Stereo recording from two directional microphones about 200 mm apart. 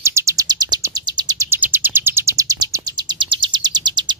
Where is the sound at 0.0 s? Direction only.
15° right (ahead or behind).